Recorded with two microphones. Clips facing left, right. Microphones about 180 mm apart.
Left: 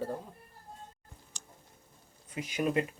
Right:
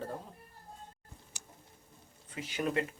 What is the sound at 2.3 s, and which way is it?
Speech, 15° left (ahead or behind).